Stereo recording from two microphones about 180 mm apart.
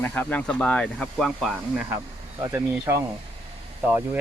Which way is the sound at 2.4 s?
15° right (ahead or behind).